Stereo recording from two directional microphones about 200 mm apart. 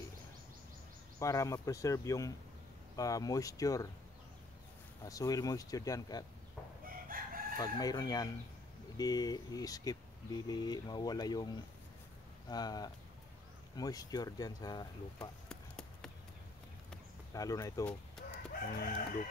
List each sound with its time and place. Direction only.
1.2 s speech: 15° left (ahead or behind)
5.0 s speech: 15° left (ahead or behind)
7.1 s crowing: 45° right (ahead or behind)
7.5 s speech: 20° left (ahead or behind)
15.4 s a sound: 5° left (ahead or behind)
17.3 s speech: 15° left (ahead or behind)
18.5 s crowing: 45° left (ahead or behind)